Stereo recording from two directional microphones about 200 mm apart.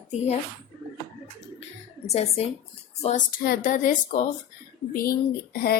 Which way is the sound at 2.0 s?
30° left (ahead or behind).